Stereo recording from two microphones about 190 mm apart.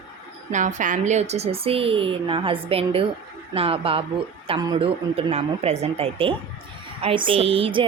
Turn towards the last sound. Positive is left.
turn(degrees=-30)  # may be behind; listen again after turning